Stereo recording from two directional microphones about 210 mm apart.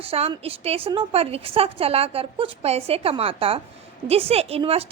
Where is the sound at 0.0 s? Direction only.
30° right (ahead or behind).